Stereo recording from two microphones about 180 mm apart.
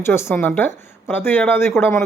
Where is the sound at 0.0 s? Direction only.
15° left (ahead or behind).